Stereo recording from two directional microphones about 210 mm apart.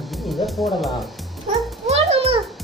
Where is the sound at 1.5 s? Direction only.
35° right (ahead or behind).